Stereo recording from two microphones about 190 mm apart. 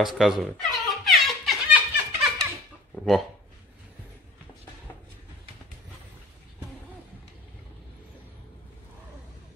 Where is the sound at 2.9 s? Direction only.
Centre (ahead or behind).